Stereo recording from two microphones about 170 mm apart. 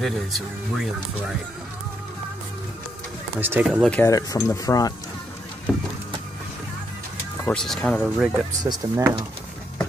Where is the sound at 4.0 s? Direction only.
20° left (ahead or behind).